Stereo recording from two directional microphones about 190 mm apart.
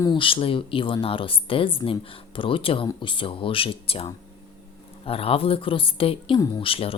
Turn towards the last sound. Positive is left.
turn(degrees=30)  # may be behind; listen again after turning